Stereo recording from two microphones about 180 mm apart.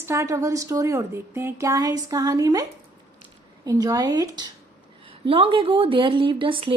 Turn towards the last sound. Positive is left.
turn(degrees=-30)  # may be behind; listen again after turning